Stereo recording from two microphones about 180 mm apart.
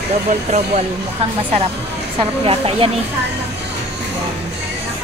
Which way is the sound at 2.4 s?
30° right (ahead or behind).